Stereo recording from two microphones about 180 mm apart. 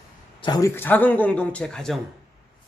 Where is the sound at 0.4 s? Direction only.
20° left (ahead or behind).